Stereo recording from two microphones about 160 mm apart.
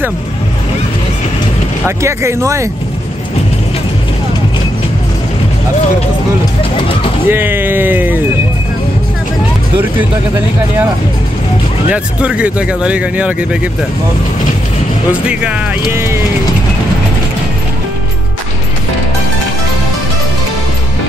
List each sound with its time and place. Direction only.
1.9 s speech: 20° right (ahead or behind)
7.2 s speech: 15° right (ahead or behind)
11.9 s speech: 10° right (ahead or behind)
15.9 s speech: 15° right (ahead or behind)